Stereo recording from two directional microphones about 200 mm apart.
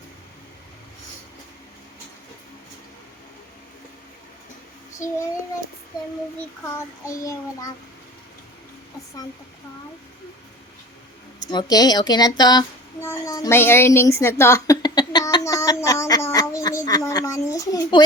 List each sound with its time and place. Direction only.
11.3 s speech: 20° left (ahead or behind)